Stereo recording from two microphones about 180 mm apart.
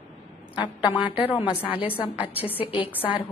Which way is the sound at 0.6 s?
25° left (ahead or behind).